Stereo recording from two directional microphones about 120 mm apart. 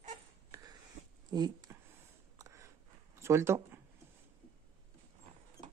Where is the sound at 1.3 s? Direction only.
35° right (ahead or behind).